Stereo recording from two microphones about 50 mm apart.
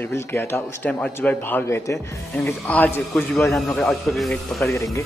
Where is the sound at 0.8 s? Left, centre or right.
Left.